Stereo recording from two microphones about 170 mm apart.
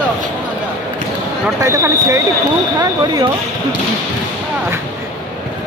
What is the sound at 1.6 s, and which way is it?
Speech, 15° right (ahead or behind).